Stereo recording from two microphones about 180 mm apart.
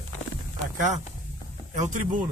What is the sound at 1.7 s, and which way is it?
Speech, 45° right (ahead or behind).